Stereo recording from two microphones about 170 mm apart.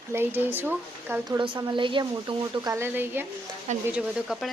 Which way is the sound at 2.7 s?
15° right (ahead or behind).